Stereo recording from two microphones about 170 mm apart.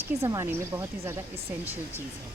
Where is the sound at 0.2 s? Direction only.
20° right (ahead or behind).